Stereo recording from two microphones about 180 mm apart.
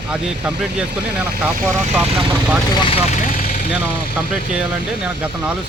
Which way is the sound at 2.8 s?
30° left (ahead or behind).